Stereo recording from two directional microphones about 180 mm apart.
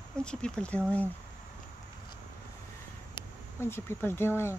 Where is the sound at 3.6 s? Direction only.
15° left (ahead or behind).